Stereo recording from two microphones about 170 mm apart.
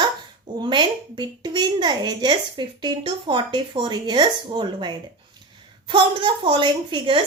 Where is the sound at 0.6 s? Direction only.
25° right (ahead or behind).